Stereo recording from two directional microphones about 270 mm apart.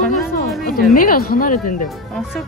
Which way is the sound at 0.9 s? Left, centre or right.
Left.